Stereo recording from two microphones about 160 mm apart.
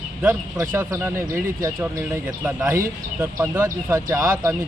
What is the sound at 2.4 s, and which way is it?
Speech, 5° right (ahead or behind).